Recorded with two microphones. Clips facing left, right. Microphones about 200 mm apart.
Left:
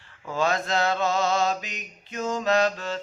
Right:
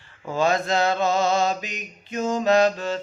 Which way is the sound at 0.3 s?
Centre (ahead or behind).